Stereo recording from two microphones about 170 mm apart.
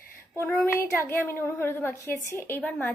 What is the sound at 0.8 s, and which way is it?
A woman's voice, 15° left (ahead or behind).